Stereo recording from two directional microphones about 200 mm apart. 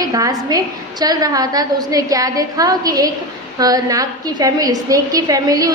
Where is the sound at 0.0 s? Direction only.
15° right (ahead or behind).